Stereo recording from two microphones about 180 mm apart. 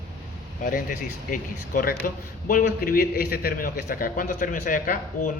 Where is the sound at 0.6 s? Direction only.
50° left (ahead or behind).